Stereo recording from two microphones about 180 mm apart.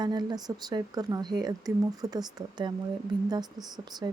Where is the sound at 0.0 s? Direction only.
25° right (ahead or behind).